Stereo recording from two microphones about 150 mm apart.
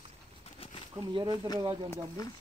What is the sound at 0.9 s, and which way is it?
Speech, 30° right (ahead or behind).